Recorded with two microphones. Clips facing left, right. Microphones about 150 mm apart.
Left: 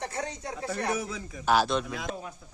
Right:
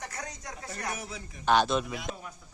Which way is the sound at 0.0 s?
30° left (ahead or behind).